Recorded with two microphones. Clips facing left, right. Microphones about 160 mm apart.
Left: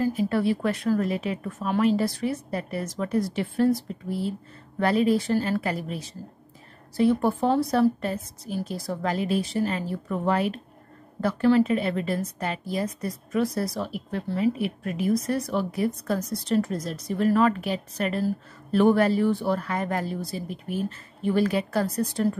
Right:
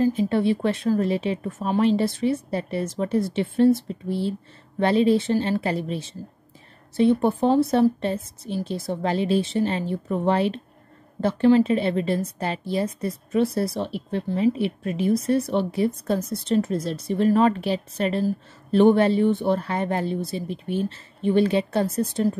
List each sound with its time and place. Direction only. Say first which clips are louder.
0.0 s a woman's voice: right 3 dB; 25° right (ahead or behind)